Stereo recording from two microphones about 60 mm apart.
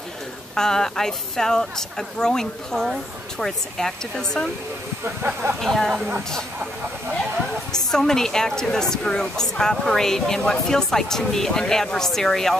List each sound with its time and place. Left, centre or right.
0.6 s a woman's voice: centre
5.0 s speech: right
5.6 s speech: centre
7.9 s a woman's voice: centre